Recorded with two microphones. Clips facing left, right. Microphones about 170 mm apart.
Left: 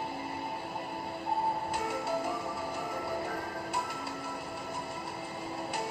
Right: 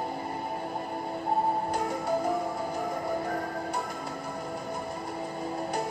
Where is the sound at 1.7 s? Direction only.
45° right (ahead or behind).